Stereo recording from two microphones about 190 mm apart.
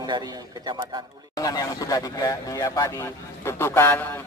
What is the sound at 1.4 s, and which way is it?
Speech, 20° left (ahead or behind).